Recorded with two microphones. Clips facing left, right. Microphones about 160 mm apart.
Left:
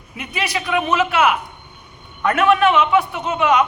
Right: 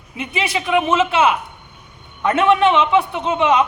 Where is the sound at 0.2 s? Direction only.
25° right (ahead or behind).